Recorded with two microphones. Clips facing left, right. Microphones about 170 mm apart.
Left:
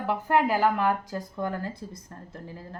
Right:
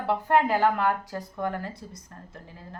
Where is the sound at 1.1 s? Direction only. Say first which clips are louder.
Even; 30° left (ahead or behind).